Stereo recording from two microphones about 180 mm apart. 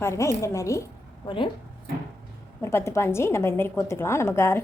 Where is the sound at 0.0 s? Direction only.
15° left (ahead or behind).